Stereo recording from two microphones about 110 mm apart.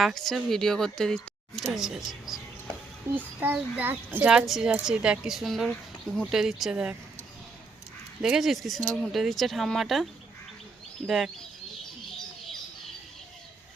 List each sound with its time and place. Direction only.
0.0 s speech: centre (ahead or behind)
3.1 s speech: 20° right (ahead or behind)
4.3 s speech: 5° right (ahead or behind)
8.2 s speech: 5° right (ahead or behind)